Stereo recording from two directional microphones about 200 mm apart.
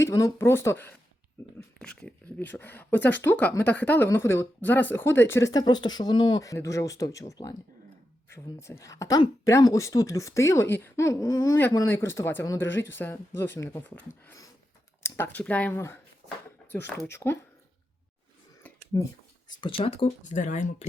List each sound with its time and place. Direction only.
0.0 s speech: 15° left (ahead or behind)
12.7 s speech: 70° left (ahead or behind)
13.0 s speech: 10° left (ahead or behind)
18.9 s speech: 15° left (ahead or behind); by 20.8 s 35° left (ahead or behind)